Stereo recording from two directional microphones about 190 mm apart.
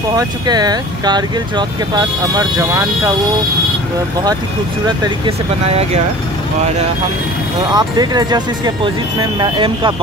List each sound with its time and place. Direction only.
0.1 s speech: 20° right (ahead or behind)
4.8 s speech: 25° right (ahead or behind)
7.7 s speech: 20° right (ahead or behind)